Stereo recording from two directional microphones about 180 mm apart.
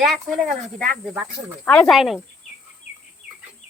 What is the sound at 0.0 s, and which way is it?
Speech, centre (ahead or behind).